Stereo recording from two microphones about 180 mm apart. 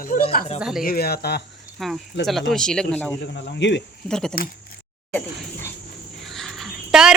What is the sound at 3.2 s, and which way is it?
Speech, 75° left (ahead or behind).